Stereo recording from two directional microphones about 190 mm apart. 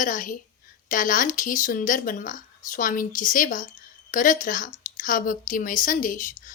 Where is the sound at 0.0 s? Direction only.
45° left (ahead or behind).